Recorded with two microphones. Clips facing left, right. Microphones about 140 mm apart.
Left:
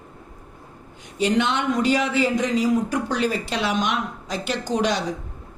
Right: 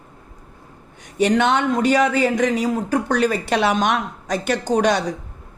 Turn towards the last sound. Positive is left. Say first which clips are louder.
# right 5 dB
turn(degrees=-55)  # may be behind; listen again after turning